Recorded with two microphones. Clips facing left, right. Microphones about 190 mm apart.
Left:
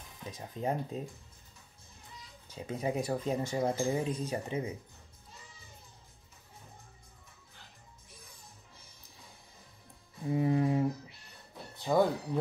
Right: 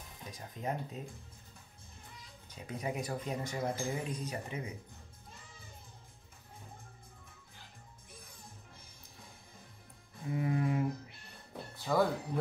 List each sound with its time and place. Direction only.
0.3 s speech: 30° left (ahead or behind)
2.5 s speech: 25° left (ahead or behind)
10.3 s music: 25° left (ahead or behind)
11.7 s a sound: 20° left (ahead or behind)